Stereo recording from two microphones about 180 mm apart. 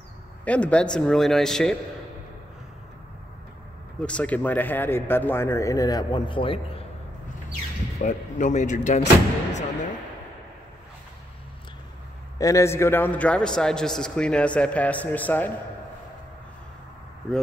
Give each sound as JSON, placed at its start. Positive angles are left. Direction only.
{"t": 0.5, "sound": "a man's voice", "side_deg": 5}
{"t": 4.0, "sound": "a man's voice", "side_deg": 5}
{"t": 8.0, "sound": "speech", "side_deg": 45}
{"t": 9.0, "sound": "speech", "side_deg": 85}
{"t": 12.4, "sound": "a man's voice", "side_deg": 15}